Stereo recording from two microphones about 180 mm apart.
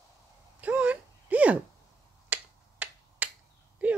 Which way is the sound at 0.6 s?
10° right (ahead or behind).